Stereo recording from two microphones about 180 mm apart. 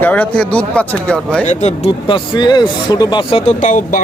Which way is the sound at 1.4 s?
40° left (ahead or behind).